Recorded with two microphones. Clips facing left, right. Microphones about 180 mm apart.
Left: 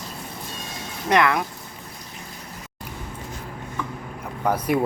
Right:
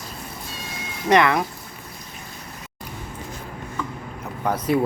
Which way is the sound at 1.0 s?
Centre (ahead or behind).